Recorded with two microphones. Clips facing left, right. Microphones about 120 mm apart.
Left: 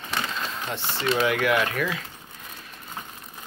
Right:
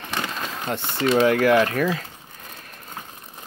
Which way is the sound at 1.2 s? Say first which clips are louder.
Right 6 dB; 40° right (ahead or behind).